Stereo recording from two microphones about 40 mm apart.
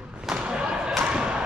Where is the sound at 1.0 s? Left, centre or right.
Right.